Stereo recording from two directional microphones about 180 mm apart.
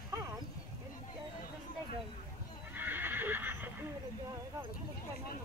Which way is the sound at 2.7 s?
10° right (ahead or behind).